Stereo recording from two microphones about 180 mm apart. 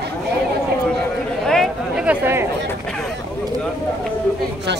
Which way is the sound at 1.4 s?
Centre (ahead or behind).